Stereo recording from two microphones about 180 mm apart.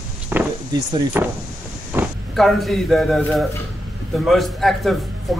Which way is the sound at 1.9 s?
15° right (ahead or behind).